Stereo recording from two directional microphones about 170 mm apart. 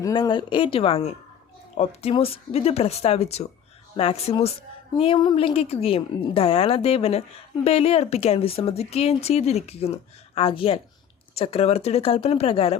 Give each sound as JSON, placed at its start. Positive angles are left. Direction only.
{"t": 0.0, "sound": "a woman's voice", "side_deg": 25}